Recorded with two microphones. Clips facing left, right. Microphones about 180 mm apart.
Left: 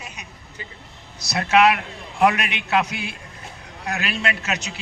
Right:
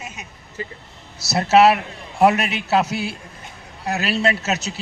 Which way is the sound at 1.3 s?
25° right (ahead or behind).